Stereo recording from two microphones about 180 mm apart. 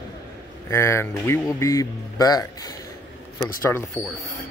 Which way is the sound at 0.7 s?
15° left (ahead or behind).